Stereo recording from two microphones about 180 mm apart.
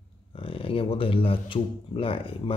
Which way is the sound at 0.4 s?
30° left (ahead or behind).